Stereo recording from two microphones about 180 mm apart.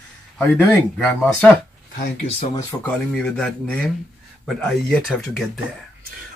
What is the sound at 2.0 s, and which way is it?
Speech, 35° left (ahead or behind).